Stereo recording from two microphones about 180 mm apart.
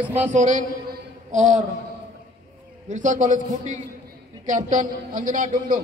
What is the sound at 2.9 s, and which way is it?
A man's voice, 45° right (ahead or behind).